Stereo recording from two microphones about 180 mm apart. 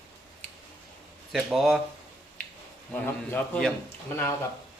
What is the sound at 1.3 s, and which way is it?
Speech, centre (ahead or behind).